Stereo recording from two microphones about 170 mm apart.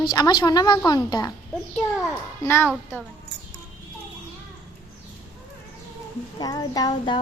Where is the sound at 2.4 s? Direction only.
15° left (ahead or behind).